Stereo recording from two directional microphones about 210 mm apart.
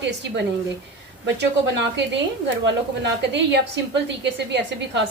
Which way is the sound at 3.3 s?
55° right (ahead or behind).